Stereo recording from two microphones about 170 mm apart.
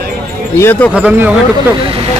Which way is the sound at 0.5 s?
15° left (ahead or behind).